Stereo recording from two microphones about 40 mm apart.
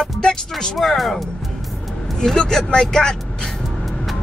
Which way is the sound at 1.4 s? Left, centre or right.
Centre.